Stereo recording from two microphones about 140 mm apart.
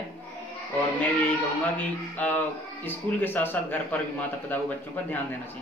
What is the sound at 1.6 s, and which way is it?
Speech, 10° left (ahead or behind).